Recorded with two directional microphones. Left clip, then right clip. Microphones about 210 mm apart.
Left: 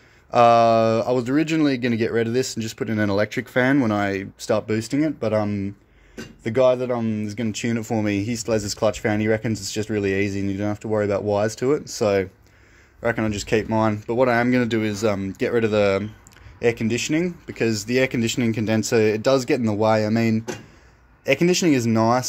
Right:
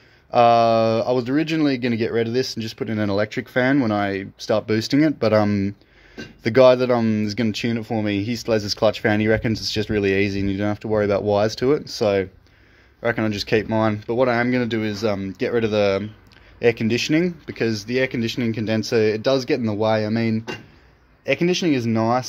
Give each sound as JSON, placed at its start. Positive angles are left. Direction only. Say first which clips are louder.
{"t": 0.3, "sound": "speech", "louder": "even", "side_deg": 0}
{"t": 4.7, "sound": "speech", "louder": "right 4 dB", "side_deg": -15}
{"t": 7.7, "sound": "speech", "louder": "even", "side_deg": 0}
{"t": 16.6, "sound": "speech", "louder": "right 2 dB", "side_deg": -10}
{"t": 17.6, "sound": "speech", "louder": "left 1 dB", "side_deg": 10}